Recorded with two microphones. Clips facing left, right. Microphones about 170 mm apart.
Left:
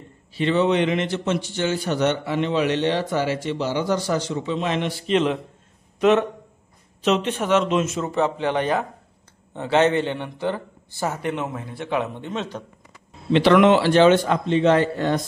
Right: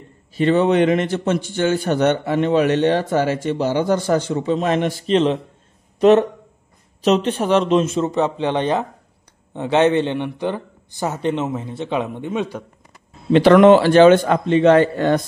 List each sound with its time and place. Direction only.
0.3 s a man's voice: 45° right (ahead or behind)
5.1 s a man's voice: 30° right (ahead or behind)
8.1 s a man's voice: 20° right (ahead or behind)
13.3 s a man's voice: 45° right (ahead or behind); by 15.2 s 60° right (ahead or behind)